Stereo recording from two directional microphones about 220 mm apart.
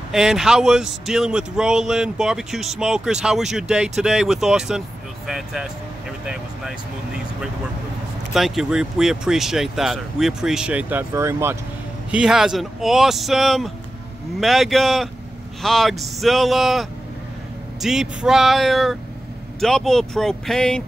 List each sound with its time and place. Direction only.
0.1 s speech: centre (ahead or behind)
8.3 s speech: centre (ahead or behind)
17.8 s speech: centre (ahead or behind)